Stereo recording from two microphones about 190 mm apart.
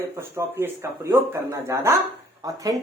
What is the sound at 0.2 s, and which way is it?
Speech, 15° right (ahead or behind).